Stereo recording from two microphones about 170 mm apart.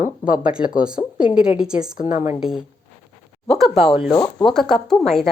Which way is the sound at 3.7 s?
35° left (ahead or behind).